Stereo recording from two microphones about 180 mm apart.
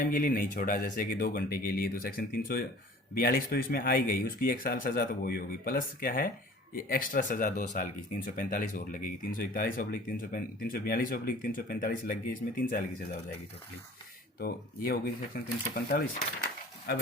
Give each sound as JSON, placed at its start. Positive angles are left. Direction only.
{"t": 0.0, "sound": "speech", "side_deg": 50}
{"t": 14.3, "sound": "speech", "side_deg": 55}